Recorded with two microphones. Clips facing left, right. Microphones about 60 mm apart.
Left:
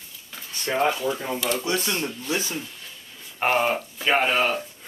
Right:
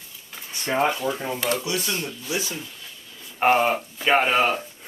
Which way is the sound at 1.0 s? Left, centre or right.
Centre.